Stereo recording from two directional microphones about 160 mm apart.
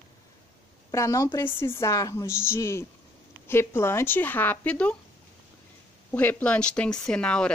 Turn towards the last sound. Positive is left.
turn(degrees=5)  # may be behind; listen again after turning